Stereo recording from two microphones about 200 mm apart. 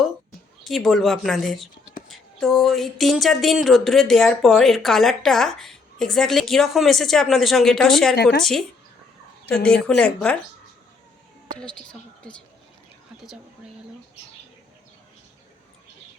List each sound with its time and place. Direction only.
0.6 s speech: centre (ahead or behind)
8.1 s speech: 55° left (ahead or behind)
8.4 s speech: centre (ahead or behind)
9.8 s speech: 5° left (ahead or behind)
11.5 s speech: 5° left (ahead or behind)